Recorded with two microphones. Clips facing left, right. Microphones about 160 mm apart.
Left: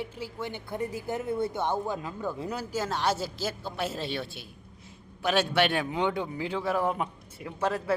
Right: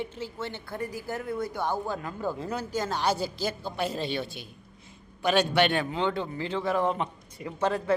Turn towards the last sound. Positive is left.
turn(degrees=5)  # may be behind; listen again after turning